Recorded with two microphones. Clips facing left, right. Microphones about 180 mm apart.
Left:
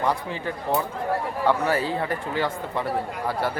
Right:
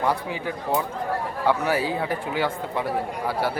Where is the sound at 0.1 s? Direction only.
5° right (ahead or behind).